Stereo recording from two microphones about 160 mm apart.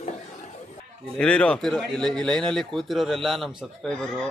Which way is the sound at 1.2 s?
5° left (ahead or behind).